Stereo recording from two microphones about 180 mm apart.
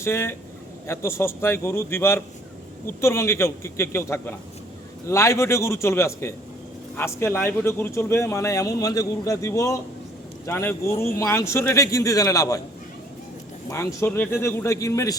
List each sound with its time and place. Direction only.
0.0 s a man's voice: 15° left (ahead or behind)
13.7 s a man's voice: 15° left (ahead or behind)